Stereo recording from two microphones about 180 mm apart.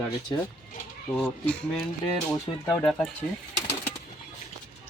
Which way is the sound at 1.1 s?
5° left (ahead or behind).